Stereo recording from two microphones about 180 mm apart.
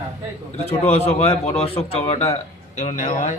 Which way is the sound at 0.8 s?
35° left (ahead or behind).